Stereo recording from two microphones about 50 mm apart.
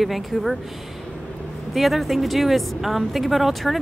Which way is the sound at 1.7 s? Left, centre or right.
Centre.